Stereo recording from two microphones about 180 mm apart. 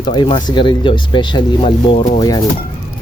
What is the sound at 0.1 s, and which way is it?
Speech, 25° left (ahead or behind).